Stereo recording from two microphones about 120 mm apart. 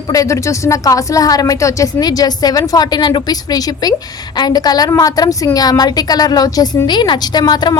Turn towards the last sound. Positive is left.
turn(degrees=35)  # may be behind; listen again after turning